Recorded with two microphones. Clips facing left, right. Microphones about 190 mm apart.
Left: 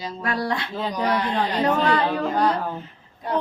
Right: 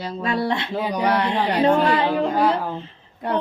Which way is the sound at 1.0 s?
65° right (ahead or behind).